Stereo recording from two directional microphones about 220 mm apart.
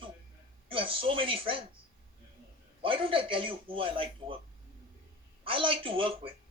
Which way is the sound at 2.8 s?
25° right (ahead or behind).